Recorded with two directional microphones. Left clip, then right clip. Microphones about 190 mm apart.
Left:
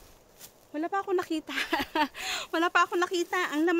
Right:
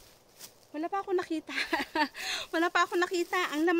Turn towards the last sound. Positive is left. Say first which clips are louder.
# left 1 dB
turn(degrees=10)  # may be behind; listen again after turning